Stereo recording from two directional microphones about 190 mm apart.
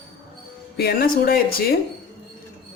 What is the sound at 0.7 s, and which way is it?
Speech, 55° left (ahead or behind).